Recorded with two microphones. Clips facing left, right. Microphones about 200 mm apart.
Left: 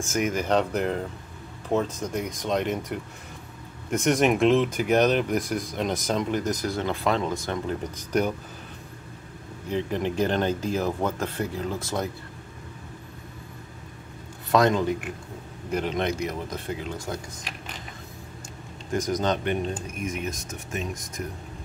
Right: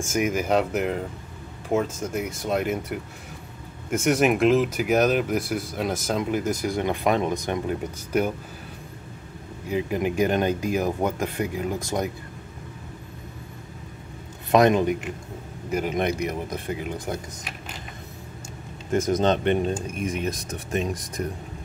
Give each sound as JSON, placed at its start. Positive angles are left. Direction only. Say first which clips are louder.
{"t": 0.0, "sound": "speech", "louder": "right 2 dB", "side_deg": -10}
{"t": 9.7, "sound": "speech", "louder": "right 2 dB", "side_deg": -10}
{"t": 14.5, "sound": "speech", "louder": "right 3 dB", "side_deg": -20}
{"t": 18.9, "sound": "speech", "louder": "right 4 dB", "side_deg": -25}